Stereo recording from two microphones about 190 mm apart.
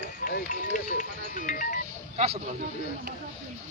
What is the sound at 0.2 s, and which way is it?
Music, 45° left (ahead or behind).